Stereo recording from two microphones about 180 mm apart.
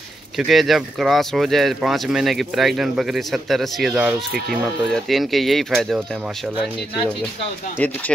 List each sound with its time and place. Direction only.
0.4 s speech: centre (ahead or behind)